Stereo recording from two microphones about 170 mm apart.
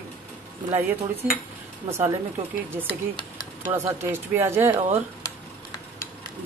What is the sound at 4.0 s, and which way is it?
Speech, 15° right (ahead or behind).